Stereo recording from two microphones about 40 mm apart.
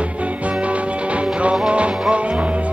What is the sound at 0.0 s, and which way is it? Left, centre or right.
Music, right.